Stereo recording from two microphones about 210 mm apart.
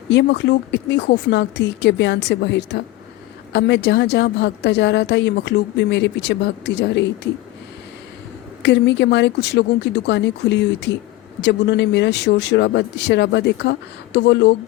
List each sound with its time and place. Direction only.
0.1 s speech: 55° left (ahead or behind)
8.6 s speech: 55° left (ahead or behind)